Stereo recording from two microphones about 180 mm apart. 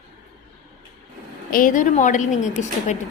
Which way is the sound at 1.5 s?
45° left (ahead or behind).